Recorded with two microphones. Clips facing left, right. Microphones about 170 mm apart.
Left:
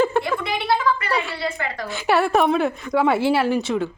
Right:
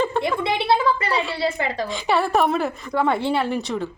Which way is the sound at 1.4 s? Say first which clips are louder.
Right 4 dB; 25° right (ahead or behind).